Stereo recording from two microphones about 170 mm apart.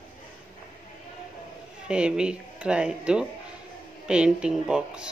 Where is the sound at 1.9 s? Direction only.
5° right (ahead or behind).